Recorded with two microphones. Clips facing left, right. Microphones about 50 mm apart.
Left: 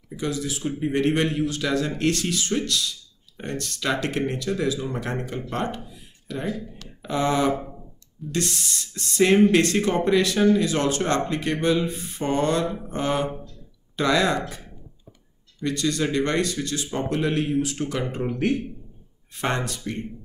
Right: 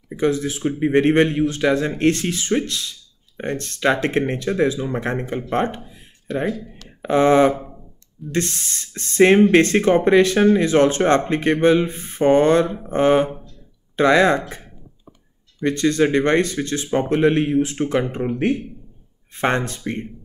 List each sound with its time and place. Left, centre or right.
0.1 s speech: right
5.9 s a sound: right
6.7 s speech: right
7.5 s a sound: centre
8.3 s speech: right
15.6 s speech: right
19.3 s speech: right